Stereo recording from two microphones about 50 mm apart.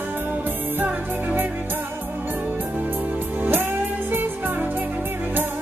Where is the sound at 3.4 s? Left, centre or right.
Right.